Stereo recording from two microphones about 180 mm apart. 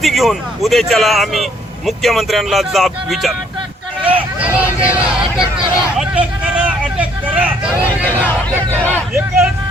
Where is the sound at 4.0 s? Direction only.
30° right (ahead or behind).